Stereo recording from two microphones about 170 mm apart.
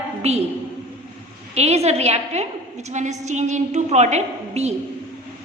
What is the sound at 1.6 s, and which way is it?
A woman's voice, 40° right (ahead or behind).